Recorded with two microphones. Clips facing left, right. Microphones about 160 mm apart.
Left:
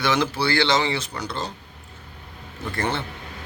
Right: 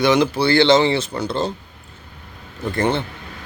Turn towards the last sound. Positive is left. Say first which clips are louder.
# right 6 dB
turn(degrees=-20)  # may be behind; listen again after turning